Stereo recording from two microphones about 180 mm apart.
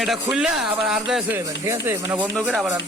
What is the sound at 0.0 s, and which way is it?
Speech, 5° right (ahead or behind).